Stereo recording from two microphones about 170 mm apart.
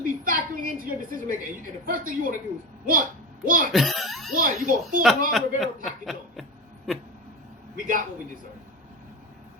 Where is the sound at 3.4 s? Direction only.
55° right (ahead or behind).